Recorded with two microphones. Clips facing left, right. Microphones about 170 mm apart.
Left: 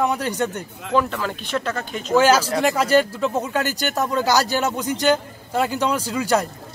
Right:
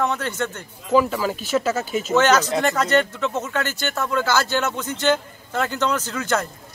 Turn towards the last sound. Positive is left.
turn(degrees=10)  # may be behind; listen again after turning